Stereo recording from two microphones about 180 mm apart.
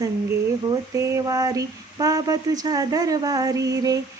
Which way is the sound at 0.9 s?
15° right (ahead or behind).